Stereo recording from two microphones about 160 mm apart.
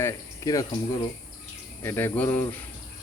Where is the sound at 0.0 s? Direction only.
20° left (ahead or behind).